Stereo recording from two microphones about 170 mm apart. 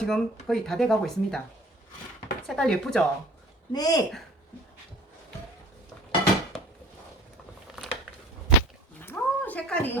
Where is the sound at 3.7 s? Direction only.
25° left (ahead or behind).